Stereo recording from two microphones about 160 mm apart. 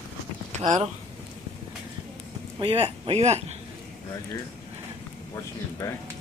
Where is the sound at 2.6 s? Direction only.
35° right (ahead or behind).